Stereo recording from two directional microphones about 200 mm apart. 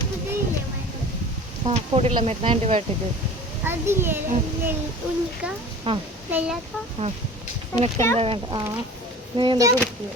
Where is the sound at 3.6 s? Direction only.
10° right (ahead or behind).